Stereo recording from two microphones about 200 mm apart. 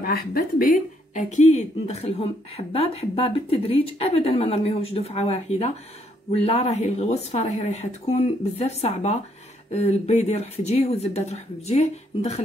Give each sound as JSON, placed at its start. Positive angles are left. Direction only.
{"t": 0.0, "sound": "speech", "side_deg": 50}